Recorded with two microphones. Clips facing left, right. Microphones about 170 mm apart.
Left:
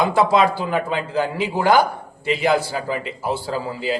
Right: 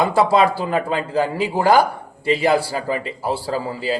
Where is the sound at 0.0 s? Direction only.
30° right (ahead or behind).